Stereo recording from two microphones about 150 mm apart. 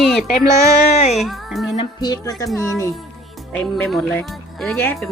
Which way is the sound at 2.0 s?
25° left (ahead or behind).